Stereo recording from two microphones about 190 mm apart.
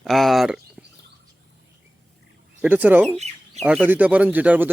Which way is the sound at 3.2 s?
35° right (ahead or behind).